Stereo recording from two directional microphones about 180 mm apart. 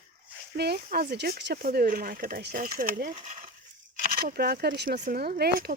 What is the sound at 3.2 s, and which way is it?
Coin, 45° right (ahead or behind).